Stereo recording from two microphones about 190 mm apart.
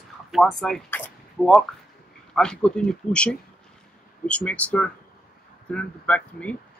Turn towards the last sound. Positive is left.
turn(degrees=5)  # may be behind; listen again after turning